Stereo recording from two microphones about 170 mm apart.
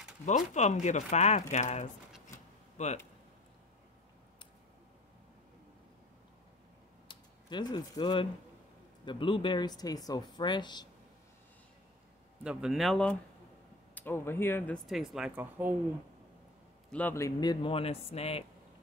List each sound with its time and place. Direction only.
0.2 s speech: 45° left (ahead or behind)
7.1 s speech: 25° left (ahead or behind)
12.4 s speech: centre (ahead or behind)
13.9 s speech: 15° left (ahead or behind)
14.9 s speech: centre (ahead or behind)
16.9 s speech: 15° left (ahead or behind); by 18.4 s 35° left (ahead or behind)